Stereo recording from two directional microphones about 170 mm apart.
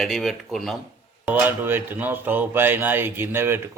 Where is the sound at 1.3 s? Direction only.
10° right (ahead or behind).